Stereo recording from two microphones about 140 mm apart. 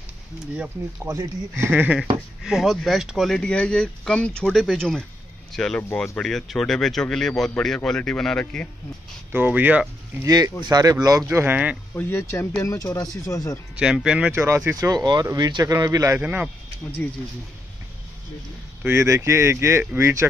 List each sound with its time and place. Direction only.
1.0 s speech: 20° right (ahead or behind); by 8.6 s 5° left (ahead or behind)
9.3 s speech: 15° right (ahead or behind)
10.2 s speech: 30° right (ahead or behind)
11.2 s speech: 15° right (ahead or behind)
11.9 s speech: 20° left (ahead or behind)
13.7 s speech: 5° right (ahead or behind)
14.4 s speech: 20° right (ahead or behind)
16.2 s speech: 10° right (ahead or behind)
18.8 s speech: 15° right (ahead or behind)